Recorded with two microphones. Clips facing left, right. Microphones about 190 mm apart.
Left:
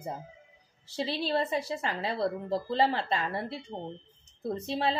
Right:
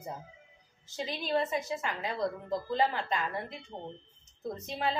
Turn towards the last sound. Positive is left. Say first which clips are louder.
# left 4 dB
turn(degrees=35)  # may be behind; listen again after turning